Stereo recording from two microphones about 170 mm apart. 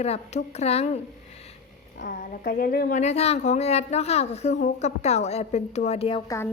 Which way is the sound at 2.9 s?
40° left (ahead or behind).